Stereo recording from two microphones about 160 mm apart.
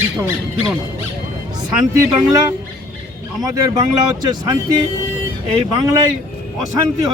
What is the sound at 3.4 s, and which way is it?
Speech, 25° right (ahead or behind).